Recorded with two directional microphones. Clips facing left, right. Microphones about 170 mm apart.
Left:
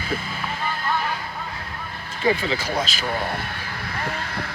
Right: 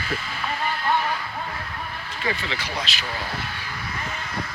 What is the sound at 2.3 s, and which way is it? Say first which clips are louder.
Speech: left 6 dB; 45° left (ahead or behind).